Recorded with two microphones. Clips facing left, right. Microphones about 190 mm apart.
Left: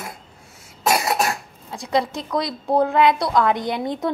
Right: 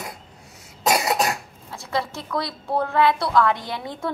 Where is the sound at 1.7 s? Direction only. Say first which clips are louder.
Left 5 dB; 15° left (ahead or behind).